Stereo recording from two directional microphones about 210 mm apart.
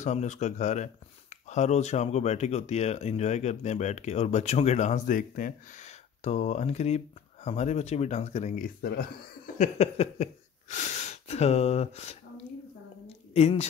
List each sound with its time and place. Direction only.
0.0 s speech: 35° left (ahead or behind)
9.6 s speech: 30° left (ahead or behind)
13.0 s a sound: 30° left (ahead or behind)